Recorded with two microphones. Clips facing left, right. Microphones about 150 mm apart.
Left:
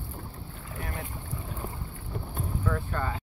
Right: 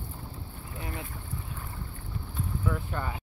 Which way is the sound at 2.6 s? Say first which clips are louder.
Left 2 dB; 10° right (ahead or behind).